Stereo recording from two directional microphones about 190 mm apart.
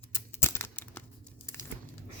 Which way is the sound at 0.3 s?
15° left (ahead or behind).